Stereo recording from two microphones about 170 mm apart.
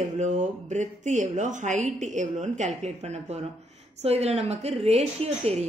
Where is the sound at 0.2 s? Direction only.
45° right (ahead or behind).